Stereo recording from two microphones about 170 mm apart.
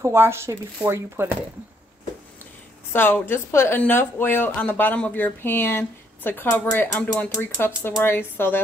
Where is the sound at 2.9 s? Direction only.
10° left (ahead or behind).